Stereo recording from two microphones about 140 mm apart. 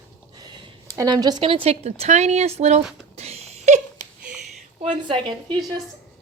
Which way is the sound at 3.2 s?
50° right (ahead or behind).